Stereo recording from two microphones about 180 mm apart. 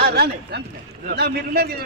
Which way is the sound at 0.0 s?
65° right (ahead or behind).